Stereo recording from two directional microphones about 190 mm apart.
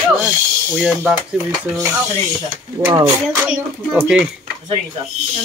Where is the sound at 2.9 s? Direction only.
20° right (ahead or behind).